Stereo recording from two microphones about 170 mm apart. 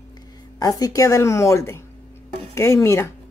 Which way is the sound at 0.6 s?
20° left (ahead or behind).